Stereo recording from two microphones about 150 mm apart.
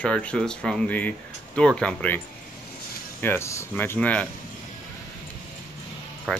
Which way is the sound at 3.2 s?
15° left (ahead or behind).